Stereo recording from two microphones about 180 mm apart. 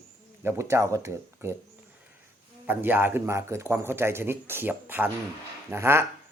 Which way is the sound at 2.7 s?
10° right (ahead or behind).